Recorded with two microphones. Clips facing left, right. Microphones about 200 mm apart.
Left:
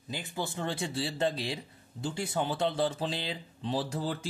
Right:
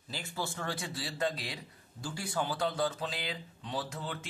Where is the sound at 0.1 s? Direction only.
20° left (ahead or behind).